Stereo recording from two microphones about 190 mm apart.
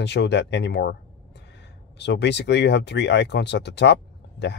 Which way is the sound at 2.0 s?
65° left (ahead or behind).